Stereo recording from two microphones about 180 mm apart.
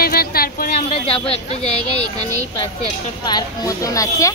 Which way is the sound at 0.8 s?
35° left (ahead or behind).